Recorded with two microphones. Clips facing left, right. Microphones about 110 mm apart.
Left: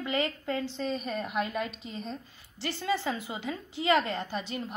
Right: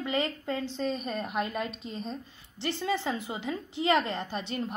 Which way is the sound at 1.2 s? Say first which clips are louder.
Left 1 dB; 35° right (ahead or behind).